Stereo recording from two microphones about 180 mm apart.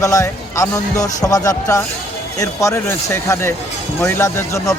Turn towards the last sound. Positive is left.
turn(degrees=15)  # may be behind; listen again after turning